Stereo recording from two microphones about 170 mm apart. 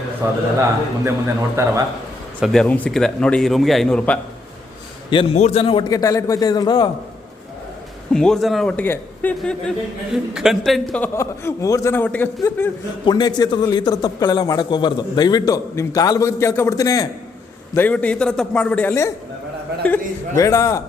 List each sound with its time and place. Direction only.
0.2 s a man's voice: 15° right (ahead or behind)
1.6 s a man's voice: 15° right (ahead or behind)
2.4 s a man's voice: centre (ahead or behind)
5.1 s a man's voice: 35° left (ahead or behind)
5.9 s a man's voice: 20° left (ahead or behind)
8.1 s a man's voice: 5° left (ahead or behind)
13.1 s a man's voice: 25° left (ahead or behind)
17.7 s a man's voice: 10° left (ahead or behind)